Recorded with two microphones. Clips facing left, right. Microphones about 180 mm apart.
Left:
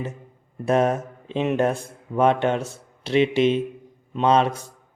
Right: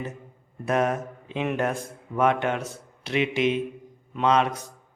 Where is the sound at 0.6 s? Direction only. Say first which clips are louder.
Left 4 dB; 30° left (ahead or behind).